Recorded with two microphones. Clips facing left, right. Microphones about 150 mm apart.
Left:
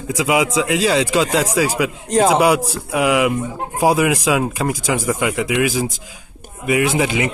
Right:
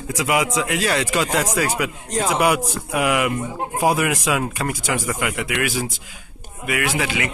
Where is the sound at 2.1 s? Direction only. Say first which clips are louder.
Left 8 dB; 70° left (ahead or behind).